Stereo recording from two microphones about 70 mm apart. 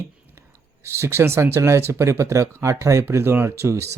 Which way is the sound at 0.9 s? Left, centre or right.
Right.